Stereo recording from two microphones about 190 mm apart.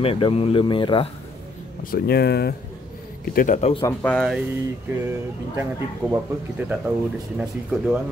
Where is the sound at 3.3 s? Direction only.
40° left (ahead or behind).